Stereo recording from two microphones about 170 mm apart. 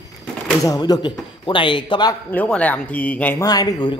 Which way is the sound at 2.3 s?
10° left (ahead or behind).